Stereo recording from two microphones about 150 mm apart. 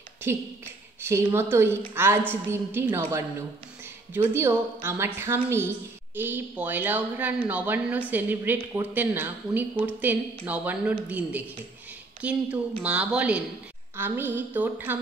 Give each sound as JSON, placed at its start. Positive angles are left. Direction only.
{"t": 0.3, "sound": "a woman's voice", "side_deg": -15}